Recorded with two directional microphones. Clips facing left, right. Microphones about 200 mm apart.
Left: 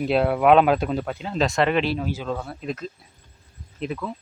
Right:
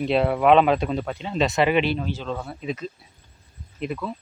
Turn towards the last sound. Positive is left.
turn(degrees=0)  # may be behind; listen again after turning